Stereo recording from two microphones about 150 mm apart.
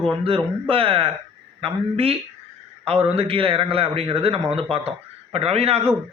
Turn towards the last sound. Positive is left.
turn(degrees=-40)  # may be behind; listen again after turning